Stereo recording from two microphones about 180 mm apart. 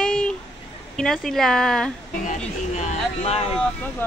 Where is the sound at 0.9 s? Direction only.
5° left (ahead or behind).